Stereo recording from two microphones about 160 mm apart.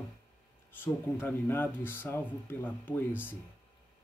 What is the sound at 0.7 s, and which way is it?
Speech, 15° left (ahead or behind).